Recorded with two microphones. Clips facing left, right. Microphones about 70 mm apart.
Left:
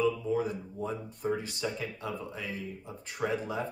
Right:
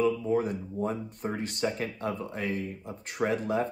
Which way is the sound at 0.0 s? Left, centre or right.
Right.